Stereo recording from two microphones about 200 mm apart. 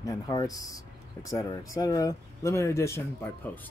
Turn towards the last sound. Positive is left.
turn(degrees=10)  # may be behind; listen again after turning